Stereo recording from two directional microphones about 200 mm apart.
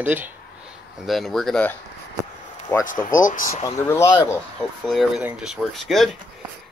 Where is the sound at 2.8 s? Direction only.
40° left (ahead or behind).